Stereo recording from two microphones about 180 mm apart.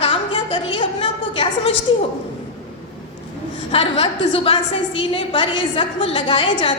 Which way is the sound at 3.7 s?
30° left (ahead or behind).